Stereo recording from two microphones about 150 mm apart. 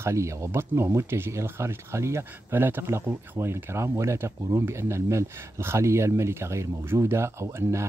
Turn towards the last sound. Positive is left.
turn(degrees=-20)  # may be behind; listen again after turning